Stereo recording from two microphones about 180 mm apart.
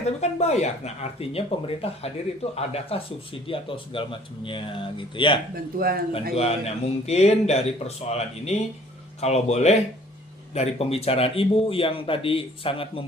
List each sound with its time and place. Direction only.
0.0 s speech: 40° left (ahead or behind)
5.5 s speech: 55° right (ahead or behind)
6.3 s speech: 35° left (ahead or behind)